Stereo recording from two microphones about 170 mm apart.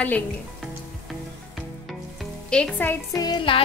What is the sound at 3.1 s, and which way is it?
Music, 25° left (ahead or behind).